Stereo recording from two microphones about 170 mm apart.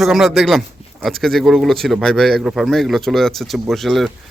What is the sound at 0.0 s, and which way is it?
A man's voice, centre (ahead or behind).